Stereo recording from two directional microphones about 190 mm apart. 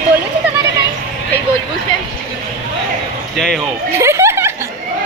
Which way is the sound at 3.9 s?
15° right (ahead or behind).